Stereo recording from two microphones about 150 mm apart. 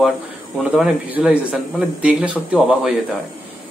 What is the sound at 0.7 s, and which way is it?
Speech, 5° right (ahead or behind).